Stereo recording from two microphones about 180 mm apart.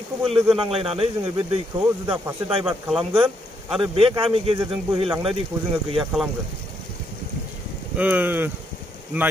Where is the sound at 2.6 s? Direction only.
Centre (ahead or behind).